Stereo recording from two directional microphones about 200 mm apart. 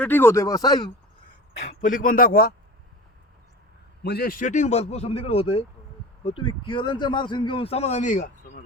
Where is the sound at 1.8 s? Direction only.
40° left (ahead or behind).